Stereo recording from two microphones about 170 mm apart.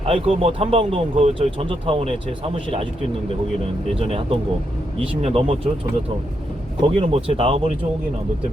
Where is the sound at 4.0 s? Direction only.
35° right (ahead or behind).